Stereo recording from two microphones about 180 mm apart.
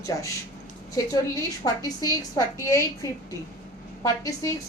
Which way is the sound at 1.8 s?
20° left (ahead or behind).